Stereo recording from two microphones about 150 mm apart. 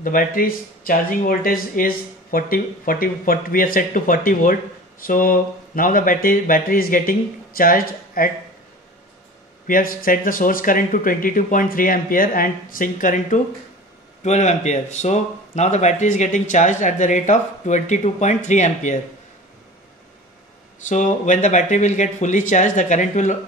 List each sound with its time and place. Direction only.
0.0 s speech: 70° left (ahead or behind)
9.7 s speech: 70° left (ahead or behind)
14.2 s speech: 50° left (ahead or behind)
20.8 s speech: 55° left (ahead or behind)